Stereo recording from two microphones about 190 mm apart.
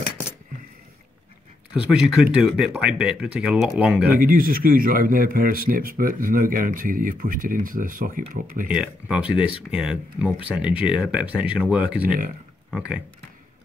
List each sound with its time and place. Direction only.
1.7 s speech: 5° right (ahead or behind)
4.2 s speech: 50° right (ahead or behind)
8.6 s speech: 5° right (ahead or behind)